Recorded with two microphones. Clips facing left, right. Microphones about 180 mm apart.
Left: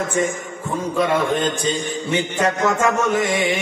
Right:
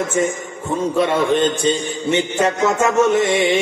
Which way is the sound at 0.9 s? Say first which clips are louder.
Right 2 dB; 25° right (ahead or behind).